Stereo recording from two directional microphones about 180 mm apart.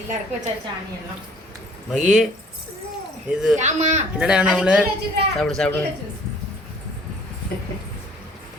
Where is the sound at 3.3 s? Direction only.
5° right (ahead or behind).